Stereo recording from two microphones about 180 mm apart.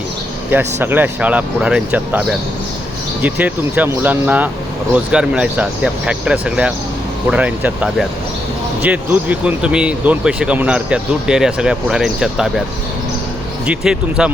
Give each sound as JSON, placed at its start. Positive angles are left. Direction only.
{"t": 0.5, "sound": "speech", "side_deg": -10}
{"t": 13.7, "sound": "speech", "side_deg": -5}